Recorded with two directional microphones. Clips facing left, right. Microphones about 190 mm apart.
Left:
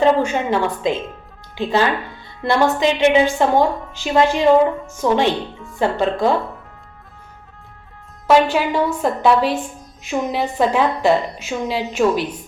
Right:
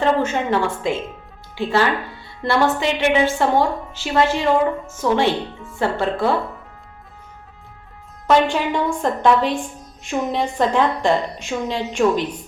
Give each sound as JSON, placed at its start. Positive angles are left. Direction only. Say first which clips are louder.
{"t": 0.0, "sound": "a woman's voice", "louder": "left 3 dB", "side_deg": 15}
{"t": 8.3, "sound": "a woman's voice", "louder": "left 2 dB", "side_deg": 5}